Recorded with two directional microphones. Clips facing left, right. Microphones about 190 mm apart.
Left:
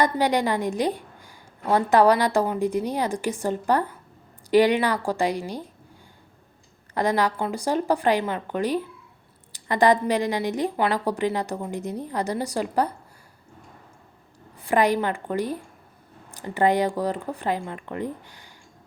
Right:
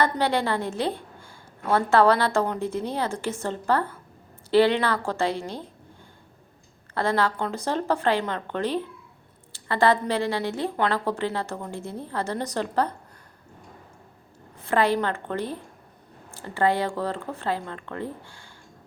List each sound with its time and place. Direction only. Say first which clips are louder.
0.0 s a woman's voice: left 2 dB; 15° left (ahead or behind)
6.9 s a woman's voice: left 1 dB; 15° left (ahead or behind)
14.6 s a woman's voice: left 1 dB; 15° left (ahead or behind)